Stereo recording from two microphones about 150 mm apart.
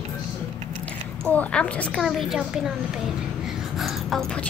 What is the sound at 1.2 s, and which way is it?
A woman's voice, 10° left (ahead or behind).